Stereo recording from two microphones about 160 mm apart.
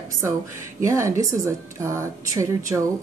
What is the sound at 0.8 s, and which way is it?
A woman's voice, 20° right (ahead or behind).